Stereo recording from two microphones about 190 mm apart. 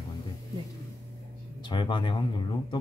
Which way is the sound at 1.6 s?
25° left (ahead or behind).